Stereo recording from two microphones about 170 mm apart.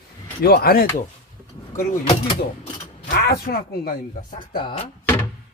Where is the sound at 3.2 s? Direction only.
65° left (ahead or behind).